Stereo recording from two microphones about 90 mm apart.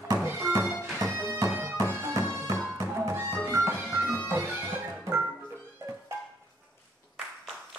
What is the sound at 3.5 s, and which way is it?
Music, 30° right (ahead or behind).